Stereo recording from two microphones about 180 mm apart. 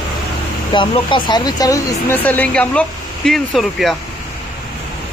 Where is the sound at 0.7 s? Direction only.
25° left (ahead or behind); by 4.0 s centre (ahead or behind).